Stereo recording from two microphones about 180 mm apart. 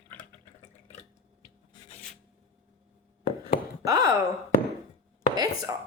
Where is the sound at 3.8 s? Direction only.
20° right (ahead or behind).